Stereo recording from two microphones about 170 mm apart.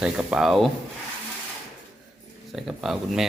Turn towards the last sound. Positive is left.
turn(degrees=0)  # may be behind; listen again after turning